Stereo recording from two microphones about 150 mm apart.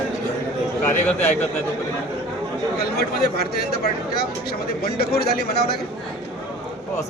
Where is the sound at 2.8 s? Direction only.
90° left.